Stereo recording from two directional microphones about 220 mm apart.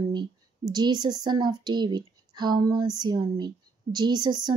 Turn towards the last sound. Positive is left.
turn(degrees=-20)  # may be behind; listen again after turning